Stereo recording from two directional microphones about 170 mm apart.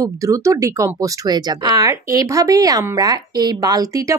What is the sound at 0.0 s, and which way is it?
Speech, 20° right (ahead or behind).